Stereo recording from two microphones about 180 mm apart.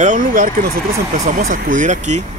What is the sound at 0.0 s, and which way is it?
Speech, 45° right (ahead or behind).